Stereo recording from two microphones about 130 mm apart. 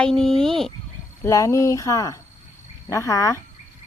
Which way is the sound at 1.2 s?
20° left (ahead or behind).